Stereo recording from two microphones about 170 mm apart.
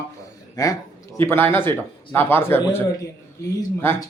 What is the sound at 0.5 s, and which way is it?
A man's voice, 20° left (ahead or behind).